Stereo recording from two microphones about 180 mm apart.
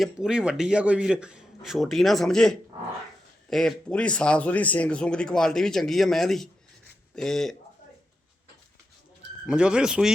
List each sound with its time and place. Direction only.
0.0 s speech: 5° right (ahead or behind)
9.5 s speech: 5° right (ahead or behind)